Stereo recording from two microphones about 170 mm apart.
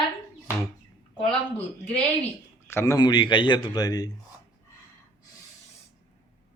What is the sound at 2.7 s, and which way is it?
A man's voice, 15° left (ahead or behind).